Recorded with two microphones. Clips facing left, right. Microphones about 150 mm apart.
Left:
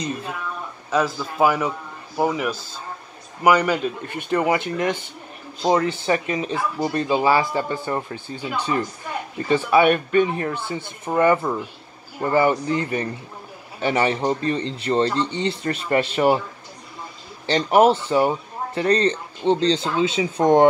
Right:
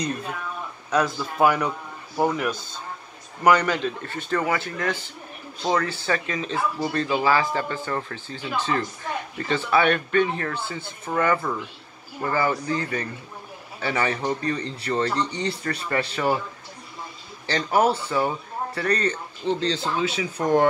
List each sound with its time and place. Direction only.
0.0 s speech: 5° left (ahead or behind); by 16.3 s 20° left (ahead or behind)
17.5 s speech: 20° left (ahead or behind)